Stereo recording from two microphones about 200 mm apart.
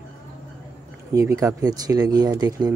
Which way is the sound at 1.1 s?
15° right (ahead or behind).